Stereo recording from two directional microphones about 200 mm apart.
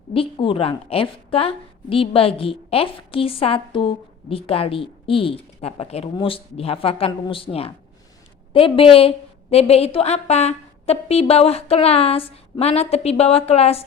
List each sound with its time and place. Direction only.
0.1 s a woman's voice: 25° left (ahead or behind)